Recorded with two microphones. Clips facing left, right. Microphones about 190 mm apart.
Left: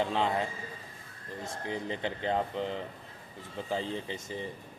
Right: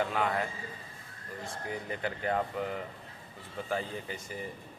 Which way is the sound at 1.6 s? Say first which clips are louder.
Left 2 dB; 25° left (ahead or behind).